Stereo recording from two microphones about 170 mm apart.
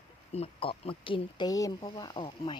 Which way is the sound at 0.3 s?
35° left (ahead or behind).